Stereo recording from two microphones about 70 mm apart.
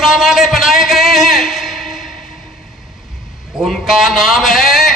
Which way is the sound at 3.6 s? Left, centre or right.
Centre.